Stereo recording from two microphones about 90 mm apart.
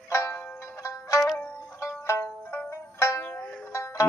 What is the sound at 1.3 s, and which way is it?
Zither, 25° left (ahead or behind).